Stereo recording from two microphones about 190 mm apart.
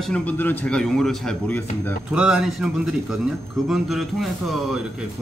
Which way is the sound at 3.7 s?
Centre (ahead or behind).